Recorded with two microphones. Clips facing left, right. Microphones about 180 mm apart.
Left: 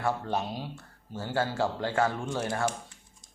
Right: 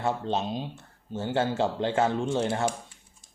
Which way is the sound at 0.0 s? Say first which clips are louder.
Right 2 dB; 20° right (ahead or behind).